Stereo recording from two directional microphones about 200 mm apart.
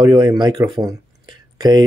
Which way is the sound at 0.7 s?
20° right (ahead or behind).